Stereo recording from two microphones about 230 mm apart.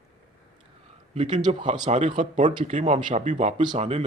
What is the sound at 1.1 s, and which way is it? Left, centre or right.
Speech, right.